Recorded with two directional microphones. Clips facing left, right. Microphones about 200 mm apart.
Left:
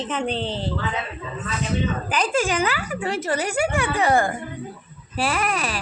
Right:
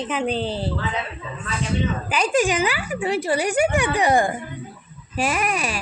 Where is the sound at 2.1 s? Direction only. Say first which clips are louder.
Right 3 dB; 15° right (ahead or behind).